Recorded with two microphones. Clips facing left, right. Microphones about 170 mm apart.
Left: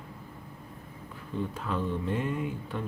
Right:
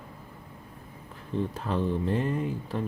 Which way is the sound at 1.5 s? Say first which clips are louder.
Right 3 dB; 35° right (ahead or behind).